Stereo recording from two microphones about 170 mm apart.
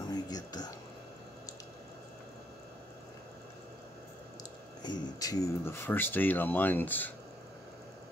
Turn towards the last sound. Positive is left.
turn(degrees=10)  # may be behind; listen again after turning